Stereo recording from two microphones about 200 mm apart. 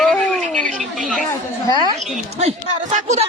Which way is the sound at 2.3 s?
35° right (ahead or behind).